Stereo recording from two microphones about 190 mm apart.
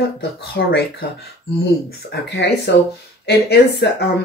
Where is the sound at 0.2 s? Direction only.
55° left (ahead or behind).